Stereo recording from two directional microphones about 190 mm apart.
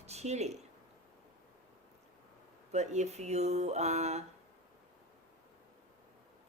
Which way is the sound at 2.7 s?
35° right (ahead or behind).